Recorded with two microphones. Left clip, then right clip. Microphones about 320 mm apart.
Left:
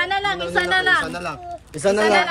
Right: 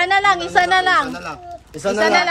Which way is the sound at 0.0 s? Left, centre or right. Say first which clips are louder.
Right 6 dB; centre.